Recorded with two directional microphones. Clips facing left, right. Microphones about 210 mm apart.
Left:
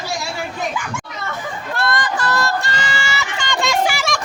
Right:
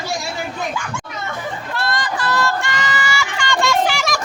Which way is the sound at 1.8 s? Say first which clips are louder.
Left 2 dB; 50° left (ahead or behind).